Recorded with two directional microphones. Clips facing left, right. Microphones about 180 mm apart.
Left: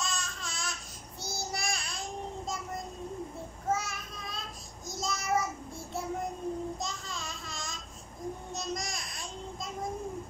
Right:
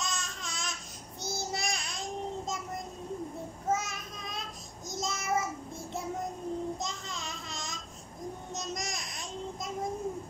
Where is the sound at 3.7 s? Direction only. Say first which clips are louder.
Right 1 dB; 20° right (ahead or behind).